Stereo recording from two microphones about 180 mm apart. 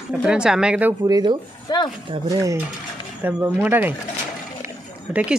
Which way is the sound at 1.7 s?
20° left (ahead or behind).